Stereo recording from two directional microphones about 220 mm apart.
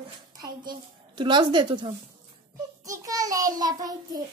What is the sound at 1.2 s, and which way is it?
A woman's voice, 20° right (ahead or behind).